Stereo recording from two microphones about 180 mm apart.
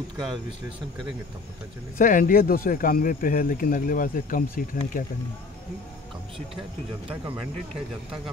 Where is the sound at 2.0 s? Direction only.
50° left (ahead or behind).